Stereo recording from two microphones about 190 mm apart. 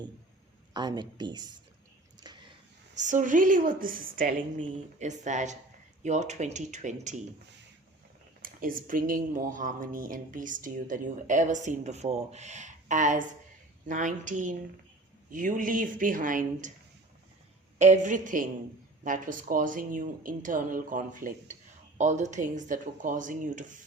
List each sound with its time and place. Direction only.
0.7 s speech: 20° right (ahead or behind)
2.2 s a sound: 20° right (ahead or behind)
2.9 s speech: 40° right (ahead or behind)
8.4 s speech: 50° right (ahead or behind)
17.7 s speech: 40° right (ahead or behind)